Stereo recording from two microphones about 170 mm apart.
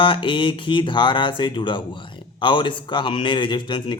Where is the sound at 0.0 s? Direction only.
30° left (ahead or behind).